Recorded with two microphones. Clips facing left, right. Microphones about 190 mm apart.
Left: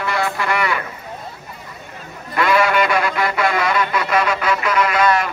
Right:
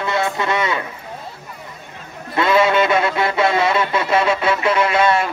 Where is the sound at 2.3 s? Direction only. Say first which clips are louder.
Right 1 dB; 25° right (ahead or behind).